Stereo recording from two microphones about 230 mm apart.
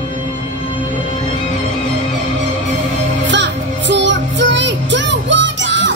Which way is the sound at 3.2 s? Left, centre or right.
Right.